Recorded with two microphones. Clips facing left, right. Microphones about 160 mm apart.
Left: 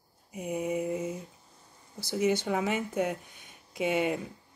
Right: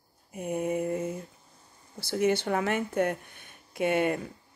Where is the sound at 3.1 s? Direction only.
60° right (ahead or behind).